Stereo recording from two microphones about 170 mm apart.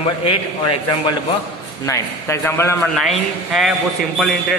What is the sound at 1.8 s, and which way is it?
Speech, 15° left (ahead or behind).